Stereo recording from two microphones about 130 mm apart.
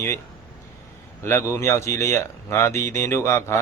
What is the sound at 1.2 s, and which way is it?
Speech, 20° left (ahead or behind).